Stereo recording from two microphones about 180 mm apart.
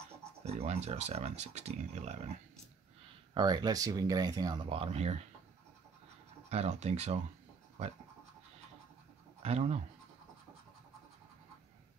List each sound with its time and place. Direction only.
0.5 s speech: 35° right (ahead or behind)
3.3 s speech: 25° right (ahead or behind)
6.5 s speech: 35° right (ahead or behind)
9.4 s speech: 35° right (ahead or behind)